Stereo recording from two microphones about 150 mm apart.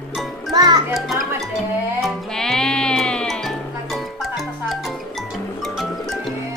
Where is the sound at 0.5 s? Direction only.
25° right (ahead or behind).